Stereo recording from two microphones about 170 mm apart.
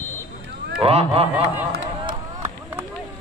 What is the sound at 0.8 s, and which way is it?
Speech, 35° right (ahead or behind).